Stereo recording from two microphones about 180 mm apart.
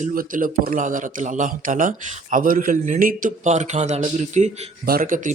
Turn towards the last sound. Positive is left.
turn(degrees=-45)  # may be behind; listen again after turning